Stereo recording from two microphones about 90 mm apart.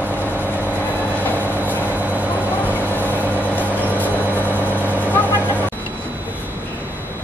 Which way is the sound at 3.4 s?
20° left (ahead or behind).